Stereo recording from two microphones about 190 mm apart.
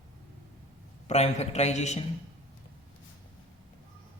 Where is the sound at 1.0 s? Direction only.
35° left (ahead or behind).